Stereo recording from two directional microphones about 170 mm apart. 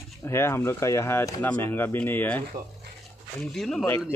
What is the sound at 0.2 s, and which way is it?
Speech, 15° left (ahead or behind).